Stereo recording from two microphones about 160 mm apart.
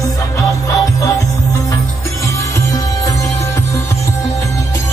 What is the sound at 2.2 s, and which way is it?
Music, 20° left (ahead or behind).